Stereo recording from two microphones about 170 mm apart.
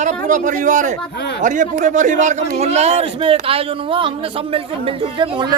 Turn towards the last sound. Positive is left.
turn(degrees=-30)  # may be behind; listen again after turning